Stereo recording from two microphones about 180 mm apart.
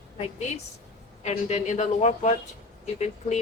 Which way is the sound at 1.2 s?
40° left (ahead or behind).